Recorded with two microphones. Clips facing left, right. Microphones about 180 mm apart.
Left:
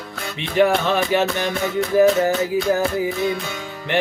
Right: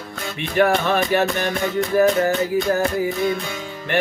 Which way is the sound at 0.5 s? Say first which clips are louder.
Left 1 dB; 20° left (ahead or behind).